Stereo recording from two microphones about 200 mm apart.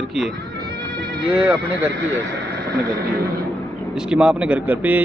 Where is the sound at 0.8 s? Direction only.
50° right (ahead or behind).